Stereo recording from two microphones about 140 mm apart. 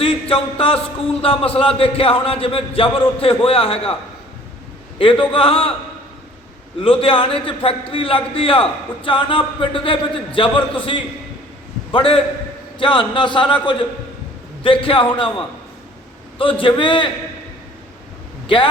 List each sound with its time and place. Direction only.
0.0 s speech: 40° left (ahead or behind)
4.9 s speech: 40° left (ahead or behind)
6.8 s speech: 40° left (ahead or behind)
11.9 s a man's voice: 40° left (ahead or behind)
18.4 s speech: 35° left (ahead or behind)